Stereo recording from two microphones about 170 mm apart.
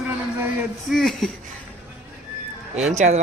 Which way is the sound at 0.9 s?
Centre (ahead or behind).